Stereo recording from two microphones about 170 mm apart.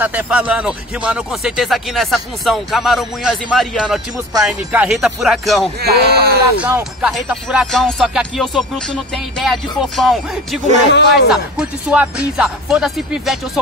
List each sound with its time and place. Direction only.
0.0 s speech: 10° right (ahead or behind)
5.8 s speech: 70° right (ahead or behind)
6.6 s speech: 5° right (ahead or behind)
10.9 s speech: 90° left
11.2 s speech: 5° right (ahead or behind)